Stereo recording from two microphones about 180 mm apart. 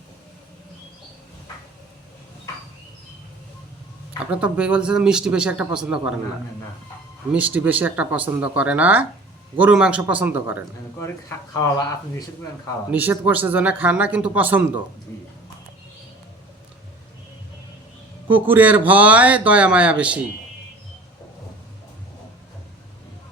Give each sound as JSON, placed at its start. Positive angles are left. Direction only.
{"t": 4.3, "sound": "a man's voice", "side_deg": -5}
{"t": 7.3, "sound": "a man's voice", "side_deg": -10}
{"t": 11.0, "sound": "speech", "side_deg": 15}
{"t": 12.9, "sound": "a man's voice", "side_deg": -10}
{"t": 15.1, "sound": "a sound", "side_deg": 15}
{"t": 18.3, "sound": "a man's voice", "side_deg": -10}